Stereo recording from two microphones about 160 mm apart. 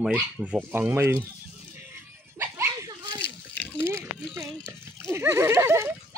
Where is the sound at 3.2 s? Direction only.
10° left (ahead or behind).